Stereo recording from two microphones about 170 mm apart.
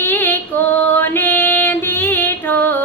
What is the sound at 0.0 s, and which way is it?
Female singing, 15° left (ahead or behind).